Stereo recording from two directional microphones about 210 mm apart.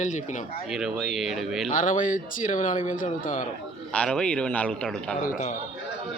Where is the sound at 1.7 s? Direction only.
40° left (ahead or behind).